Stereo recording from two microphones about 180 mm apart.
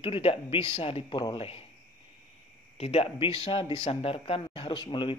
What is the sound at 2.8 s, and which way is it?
Speech, 35° left (ahead or behind).